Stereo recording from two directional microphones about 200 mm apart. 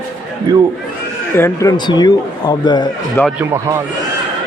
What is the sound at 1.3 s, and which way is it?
A man's voice, 15° left (ahead or behind).